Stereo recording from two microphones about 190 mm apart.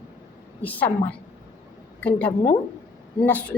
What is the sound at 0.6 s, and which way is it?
Speech, 10° left (ahead or behind).